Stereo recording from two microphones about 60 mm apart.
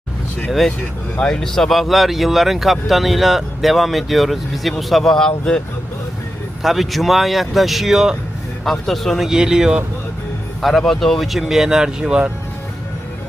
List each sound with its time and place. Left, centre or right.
1.1 s speech: centre
1.4 s speech: centre
6.6 s speech: centre
8.6 s speech: centre
10.6 s speech: centre